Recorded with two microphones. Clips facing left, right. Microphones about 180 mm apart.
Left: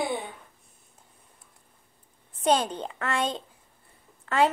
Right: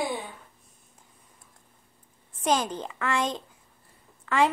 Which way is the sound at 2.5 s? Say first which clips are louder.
Left 2 dB; 30° left (ahead or behind).